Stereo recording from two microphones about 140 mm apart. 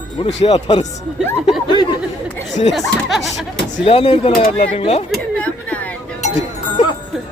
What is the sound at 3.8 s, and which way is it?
Speech, 40° left (ahead or behind).